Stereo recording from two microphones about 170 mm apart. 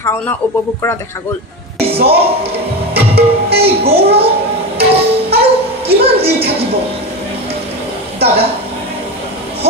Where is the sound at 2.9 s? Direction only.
70° right (ahead or behind).